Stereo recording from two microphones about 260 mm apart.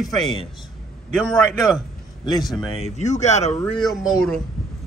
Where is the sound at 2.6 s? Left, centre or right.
Left.